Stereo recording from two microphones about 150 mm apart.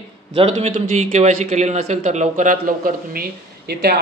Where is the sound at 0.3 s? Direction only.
40° right (ahead or behind).